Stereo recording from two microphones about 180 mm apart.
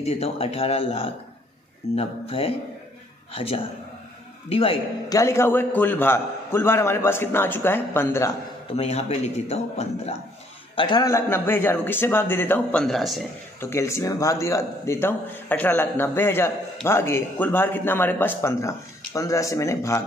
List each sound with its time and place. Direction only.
0.0 s a man's voice: 35° left (ahead or behind)
5.1 s a man's voice: 15° left (ahead or behind)
8.7 s a man's voice: 35° left (ahead or behind)
10.8 s a man's voice: 25° left (ahead or behind); by 13.2 s centre (ahead or behind)
13.6 s a man's voice: 15° left (ahead or behind)